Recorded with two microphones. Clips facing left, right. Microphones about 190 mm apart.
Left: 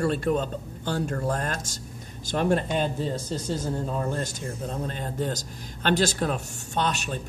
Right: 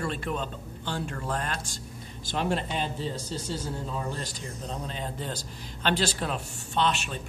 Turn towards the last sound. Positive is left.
turn(degrees=40)  # may be behind; listen again after turning